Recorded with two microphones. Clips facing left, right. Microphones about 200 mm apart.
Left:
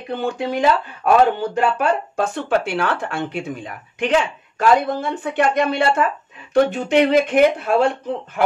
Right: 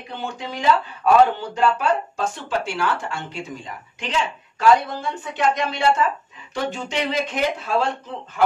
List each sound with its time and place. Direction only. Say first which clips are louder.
0.1 s speech: left 9 dB; 55° left (ahead or behind)